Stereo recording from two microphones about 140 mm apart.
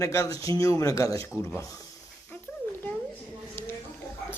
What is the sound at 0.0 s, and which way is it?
Speech, 25° left (ahead or behind).